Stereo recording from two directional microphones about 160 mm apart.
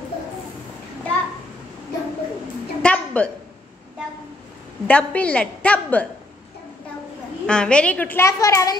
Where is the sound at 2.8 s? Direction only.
10° left (ahead or behind).